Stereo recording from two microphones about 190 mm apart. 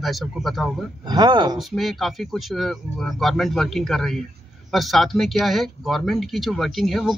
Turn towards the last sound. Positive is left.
turn(degrees=0)  # may be behind; listen again after turning